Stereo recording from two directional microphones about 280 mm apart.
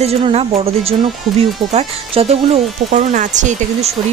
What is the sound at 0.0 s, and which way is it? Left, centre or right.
Speech, right.